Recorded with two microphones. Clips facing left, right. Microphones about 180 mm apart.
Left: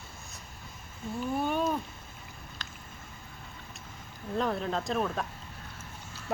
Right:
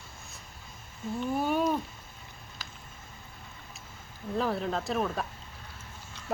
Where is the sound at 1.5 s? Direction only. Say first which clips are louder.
Right 2 dB; 5° right (ahead or behind).